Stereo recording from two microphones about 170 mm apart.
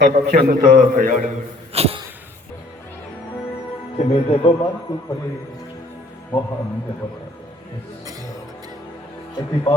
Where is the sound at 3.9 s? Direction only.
35° left (ahead or behind).